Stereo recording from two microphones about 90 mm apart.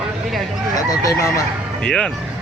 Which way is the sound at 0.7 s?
40° left (ahead or behind).